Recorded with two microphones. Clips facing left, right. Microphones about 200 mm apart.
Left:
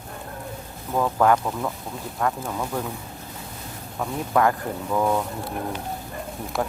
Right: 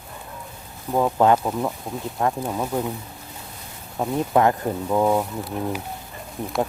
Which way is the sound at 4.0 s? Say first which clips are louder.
Right 3 dB; 25° right (ahead or behind).